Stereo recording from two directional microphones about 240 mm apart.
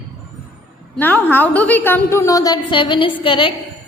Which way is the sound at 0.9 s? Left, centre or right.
Centre.